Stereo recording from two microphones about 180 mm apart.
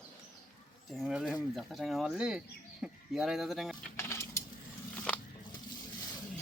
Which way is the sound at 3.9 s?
15° left (ahead or behind).